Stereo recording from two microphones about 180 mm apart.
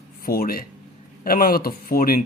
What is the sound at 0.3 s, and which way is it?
Speech, 55° left (ahead or behind).